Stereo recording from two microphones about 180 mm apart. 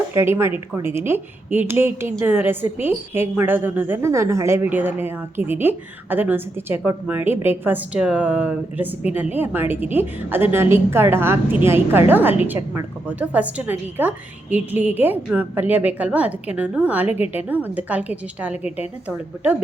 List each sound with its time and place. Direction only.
0.1 s a woman's voice: 15° right (ahead or behind)
18.5 s a woman's voice: 35° left (ahead or behind)
19.0 s a woman's voice: 10° right (ahead or behind)